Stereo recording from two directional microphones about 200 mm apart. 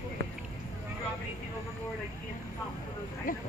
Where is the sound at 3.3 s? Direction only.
45° left (ahead or behind).